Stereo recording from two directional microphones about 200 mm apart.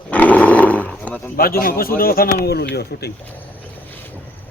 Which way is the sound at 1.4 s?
45° left (ahead or behind).